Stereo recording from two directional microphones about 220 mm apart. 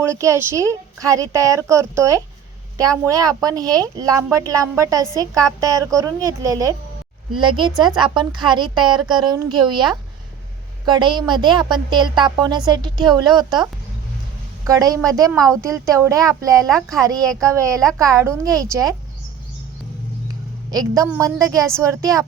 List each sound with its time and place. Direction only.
0.0 s a woman's voice: 15° right (ahead or behind)
20.7 s speech: 15° right (ahead or behind)